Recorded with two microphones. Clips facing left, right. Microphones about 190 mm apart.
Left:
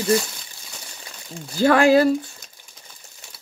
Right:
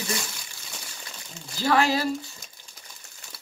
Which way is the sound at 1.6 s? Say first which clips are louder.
Left 8 dB; 55° left (ahead or behind).